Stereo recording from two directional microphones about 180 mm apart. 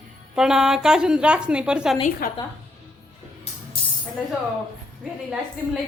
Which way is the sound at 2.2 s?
55° left (ahead or behind).